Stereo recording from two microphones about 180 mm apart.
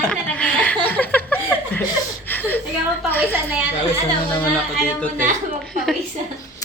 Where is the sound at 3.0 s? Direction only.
10° left (ahead or behind).